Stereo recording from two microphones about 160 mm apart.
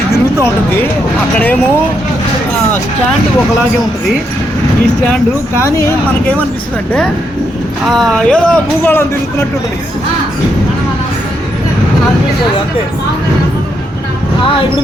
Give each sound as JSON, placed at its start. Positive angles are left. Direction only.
{"t": 1.4, "sound": "speech", "side_deg": 10}
{"t": 5.5, "sound": "speech", "side_deg": 20}
{"t": 7.9, "sound": "speech", "side_deg": 0}